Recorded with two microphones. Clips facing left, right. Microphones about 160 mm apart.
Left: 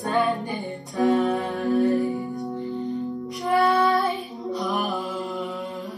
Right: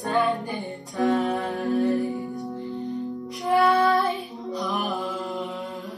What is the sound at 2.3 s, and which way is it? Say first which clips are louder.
Music: left 2 dB; 20° left (ahead or behind).